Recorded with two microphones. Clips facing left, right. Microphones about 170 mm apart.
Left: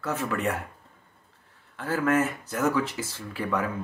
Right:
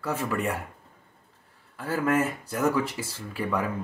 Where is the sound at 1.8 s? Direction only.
Centre (ahead or behind).